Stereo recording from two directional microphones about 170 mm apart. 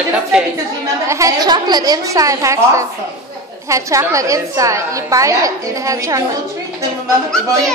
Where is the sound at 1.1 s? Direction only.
20° right (ahead or behind).